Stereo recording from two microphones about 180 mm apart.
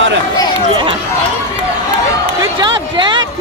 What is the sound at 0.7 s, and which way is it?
Run, 30° right (ahead or behind).